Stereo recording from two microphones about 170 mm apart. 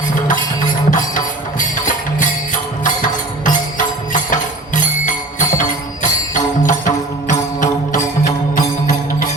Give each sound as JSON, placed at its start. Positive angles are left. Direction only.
{"t": 0.9, "sound": "music", "side_deg": 50}
{"t": 2.8, "sound": "music", "side_deg": 50}